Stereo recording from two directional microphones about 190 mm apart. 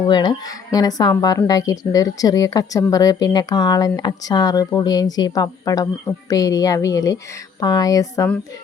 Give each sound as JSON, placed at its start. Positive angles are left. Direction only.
{"t": 0.1, "sound": "speech", "side_deg": 20}